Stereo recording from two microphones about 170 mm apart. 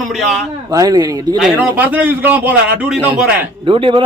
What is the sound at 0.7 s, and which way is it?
Speech, 20° right (ahead or behind).